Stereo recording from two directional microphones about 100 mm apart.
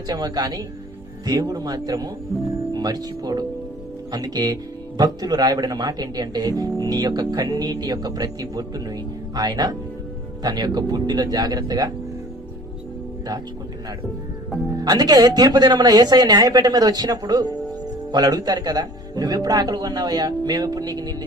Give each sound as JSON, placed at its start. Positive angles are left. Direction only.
{"t": 0.1, "sound": "speech", "side_deg": -40}
{"t": 14.8, "sound": "speech", "side_deg": -40}